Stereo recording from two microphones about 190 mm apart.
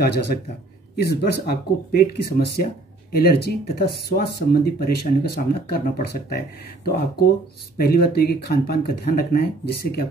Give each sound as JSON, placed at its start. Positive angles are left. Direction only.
{"t": 0.0, "sound": "speech", "side_deg": 60}